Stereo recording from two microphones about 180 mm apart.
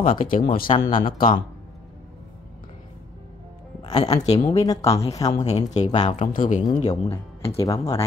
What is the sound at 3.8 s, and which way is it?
Speech, 25° left (ahead or behind).